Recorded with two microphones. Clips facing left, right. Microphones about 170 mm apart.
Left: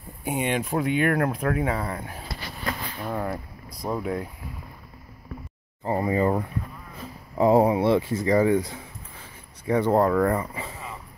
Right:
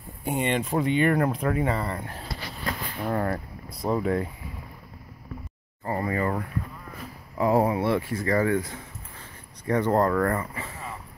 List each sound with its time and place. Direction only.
0.2 s speech: 5° left (ahead or behind)
5.9 s speech: 20° left (ahead or behind)